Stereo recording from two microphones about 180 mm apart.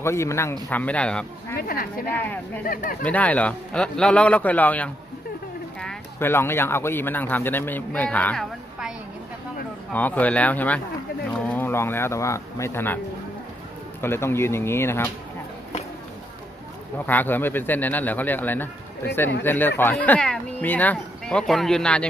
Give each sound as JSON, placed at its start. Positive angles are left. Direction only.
{"t": 0.0, "sound": "speech", "side_deg": 15}
{"t": 1.6, "sound": "a woman's voice", "side_deg": 55}
{"t": 2.1, "sound": "speech", "side_deg": 10}
{"t": 2.6, "sound": "a woman's voice", "side_deg": 50}
{"t": 3.0, "sound": "speech", "side_deg": 10}
{"t": 9.9, "sound": "speech", "side_deg": 10}
{"t": 14.0, "sound": "speech", "side_deg": 15}
{"t": 17.0, "sound": "speech", "side_deg": 10}